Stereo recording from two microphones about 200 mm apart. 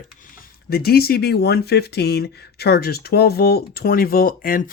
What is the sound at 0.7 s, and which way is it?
Speech, 50° left (ahead or behind).